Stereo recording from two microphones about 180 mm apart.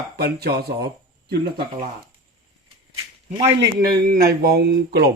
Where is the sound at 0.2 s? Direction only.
60° right (ahead or behind).